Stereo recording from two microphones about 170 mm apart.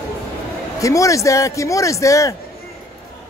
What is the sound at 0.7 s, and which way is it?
Speech, 20° left (ahead or behind).